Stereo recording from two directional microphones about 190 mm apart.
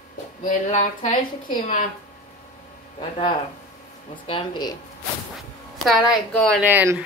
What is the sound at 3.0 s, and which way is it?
Speech, 25° left (ahead or behind).